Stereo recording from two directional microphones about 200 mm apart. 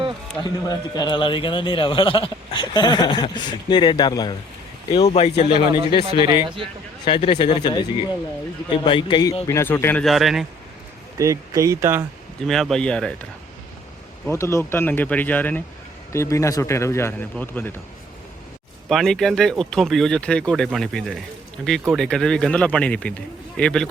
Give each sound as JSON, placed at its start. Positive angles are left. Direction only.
{"t": 0.7, "sound": "speech", "side_deg": 20}
{"t": 6.2, "sound": "speech", "side_deg": -20}
{"t": 7.0, "sound": "speech", "side_deg": 30}
{"t": 8.7, "sound": "speech", "side_deg": 25}
{"t": 11.2, "sound": "speech", "side_deg": -15}
{"t": 12.5, "sound": "speech", "side_deg": 0}
{"t": 14.3, "sound": "speech", "side_deg": 15}
{"t": 18.9, "sound": "speech", "side_deg": 0}